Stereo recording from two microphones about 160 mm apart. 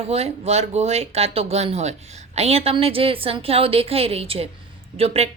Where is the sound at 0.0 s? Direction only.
40° right (ahead or behind).